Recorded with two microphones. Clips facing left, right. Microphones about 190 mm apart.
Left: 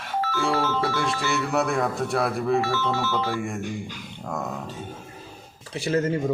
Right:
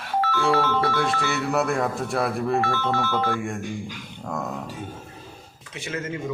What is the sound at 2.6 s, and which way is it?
Music, 55° right (ahead or behind).